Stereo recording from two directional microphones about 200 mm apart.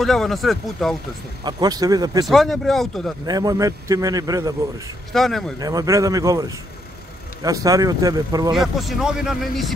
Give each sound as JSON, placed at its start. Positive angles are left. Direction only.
{"t": 0.0, "sound": "speech", "side_deg": 0}
{"t": 1.4, "sound": "speech", "side_deg": -20}
{"t": 2.2, "sound": "speech", "side_deg": 0}
{"t": 3.3, "sound": "a man's voice", "side_deg": -20}
{"t": 5.1, "sound": "speech", "side_deg": 0}
{"t": 5.6, "sound": "a man's voice", "side_deg": -20}
{"t": 7.4, "sound": "speech", "side_deg": -15}
{"t": 8.5, "sound": "speech", "side_deg": 0}